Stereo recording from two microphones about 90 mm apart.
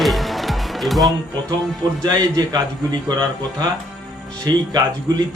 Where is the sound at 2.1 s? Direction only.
45° right (ahead or behind).